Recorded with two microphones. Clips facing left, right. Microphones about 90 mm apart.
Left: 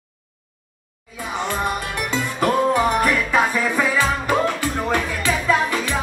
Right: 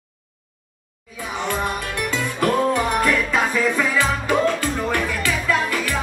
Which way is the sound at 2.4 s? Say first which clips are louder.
Left 2 dB; 15° left (ahead or behind).